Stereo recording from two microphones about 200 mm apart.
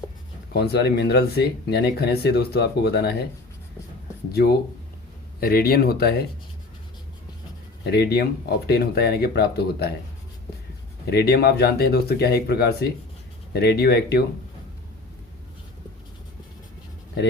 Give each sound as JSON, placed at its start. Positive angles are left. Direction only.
{"t": 0.5, "sound": "speech", "side_deg": 55}
{"t": 5.4, "sound": "speech", "side_deg": 50}
{"t": 7.9, "sound": "speech", "side_deg": 55}
{"t": 11.0, "sound": "speech", "side_deg": 55}